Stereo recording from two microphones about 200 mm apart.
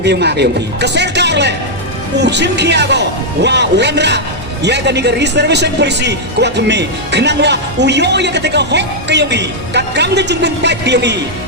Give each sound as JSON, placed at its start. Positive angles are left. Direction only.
{"t": 0.0, "sound": "speech", "side_deg": -55}